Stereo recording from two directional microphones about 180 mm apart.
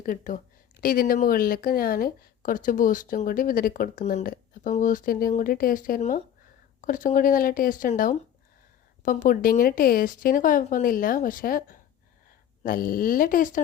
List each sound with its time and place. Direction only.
0.0 s speech: 45° left (ahead or behind)